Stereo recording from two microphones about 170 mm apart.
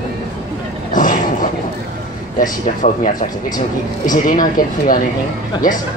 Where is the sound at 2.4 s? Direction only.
50° left (ahead or behind).